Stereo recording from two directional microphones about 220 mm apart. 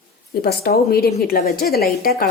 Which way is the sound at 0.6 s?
45° left (ahead or behind).